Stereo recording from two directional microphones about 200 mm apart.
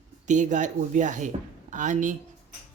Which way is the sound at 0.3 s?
40° right (ahead or behind).